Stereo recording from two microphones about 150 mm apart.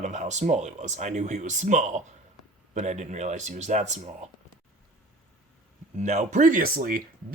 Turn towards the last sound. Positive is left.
turn(degrees=-75)  # may be behind; listen again after turning